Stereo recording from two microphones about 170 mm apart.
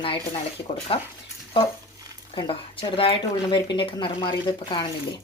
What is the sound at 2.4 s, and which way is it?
Speech, 30° left (ahead or behind).